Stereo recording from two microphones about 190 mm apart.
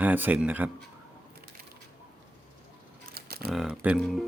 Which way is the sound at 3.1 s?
55° right (ahead or behind).